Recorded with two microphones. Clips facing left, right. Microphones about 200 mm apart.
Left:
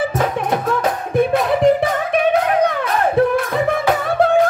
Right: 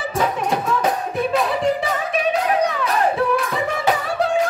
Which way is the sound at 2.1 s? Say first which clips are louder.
Left 4 dB; 55° left (ahead or behind).